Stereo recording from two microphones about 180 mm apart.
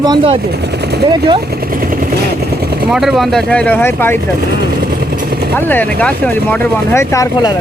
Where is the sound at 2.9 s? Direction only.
Centre (ahead or behind).